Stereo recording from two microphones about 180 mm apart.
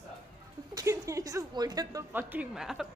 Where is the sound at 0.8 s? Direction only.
20° right (ahead or behind); by 2.9 s centre (ahead or behind).